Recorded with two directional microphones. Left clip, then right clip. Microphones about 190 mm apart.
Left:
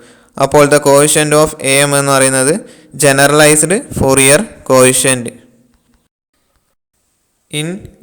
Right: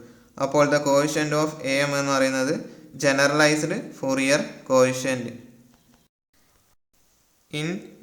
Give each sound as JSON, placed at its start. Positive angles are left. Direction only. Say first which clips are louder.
{"t": 0.0, "sound": "speech", "louder": "left 13 dB", "side_deg": 45}
{"t": 7.4, "sound": "speech", "louder": "left 9 dB", "side_deg": 30}